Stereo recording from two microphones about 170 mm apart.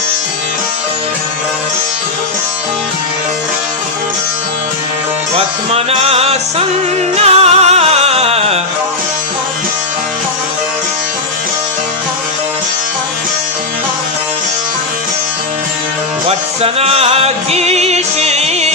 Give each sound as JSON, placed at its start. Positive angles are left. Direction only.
{"t": 5.7, "sound": "music", "side_deg": -35}
{"t": 16.6, "sound": "music", "side_deg": -35}